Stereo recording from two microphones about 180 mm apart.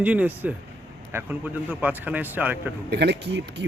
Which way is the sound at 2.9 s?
65° right (ahead or behind).